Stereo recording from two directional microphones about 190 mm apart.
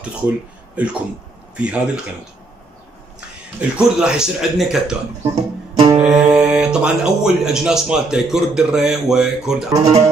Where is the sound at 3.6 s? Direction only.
5° right (ahead or behind).